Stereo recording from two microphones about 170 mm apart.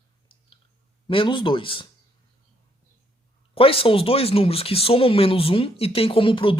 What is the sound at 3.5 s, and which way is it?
Speech, 35° left (ahead or behind).